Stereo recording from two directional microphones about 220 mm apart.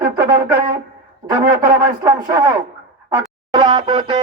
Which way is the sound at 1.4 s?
40° right (ahead or behind).